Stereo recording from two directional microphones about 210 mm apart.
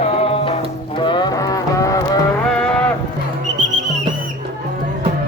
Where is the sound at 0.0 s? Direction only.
30° left (ahead or behind).